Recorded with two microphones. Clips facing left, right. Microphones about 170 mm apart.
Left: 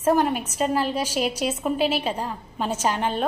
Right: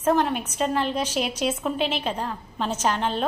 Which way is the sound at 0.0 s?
5° left (ahead or behind).